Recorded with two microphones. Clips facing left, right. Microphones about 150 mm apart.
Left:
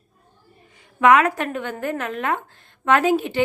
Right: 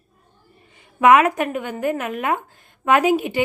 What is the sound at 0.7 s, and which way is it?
A woman's voice, 20° right (ahead or behind).